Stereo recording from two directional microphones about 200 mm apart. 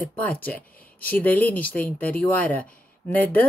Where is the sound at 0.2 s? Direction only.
10° left (ahead or behind).